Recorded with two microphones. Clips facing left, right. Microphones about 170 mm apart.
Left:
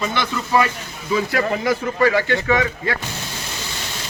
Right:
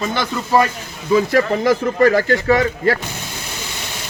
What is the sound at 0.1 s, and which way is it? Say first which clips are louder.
Speech: right 3 dB; 40° right (ahead or behind).